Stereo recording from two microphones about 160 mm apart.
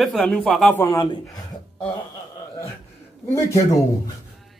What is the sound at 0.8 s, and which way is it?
Speech, 25° left (ahead or behind).